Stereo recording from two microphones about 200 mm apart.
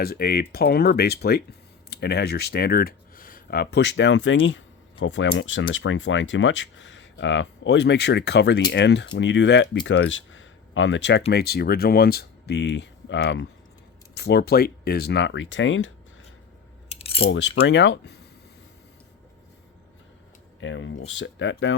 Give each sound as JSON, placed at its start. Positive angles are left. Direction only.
{"t": 0.0, "sound": "speech", "side_deg": 50}
{"t": 11.3, "sound": "speech", "side_deg": 50}
{"t": 16.9, "sound": "keys jangling", "side_deg": 30}
{"t": 17.2, "sound": "speech", "side_deg": 80}
{"t": 20.6, "sound": "speech", "side_deg": 70}